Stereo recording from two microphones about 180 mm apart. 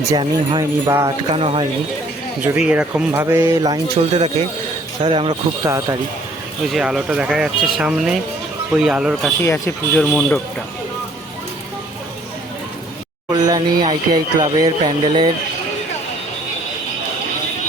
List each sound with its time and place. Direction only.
0.1 s speech: 25° right (ahead or behind)
1.3 s speech: 35° right (ahead or behind)
2.4 s speech: 10° right (ahead or behind)
5.0 s speech: 30° right (ahead or behind)
5.6 s speech: 15° right (ahead or behind)
6.7 s speech: 5° right (ahead or behind)
9.4 s speech: 15° left (ahead or behind)
13.4 s speech: 20° right (ahead or behind)